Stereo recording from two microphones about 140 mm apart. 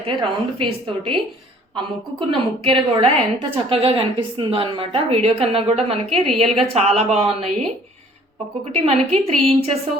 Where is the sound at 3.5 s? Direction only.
40° right (ahead or behind).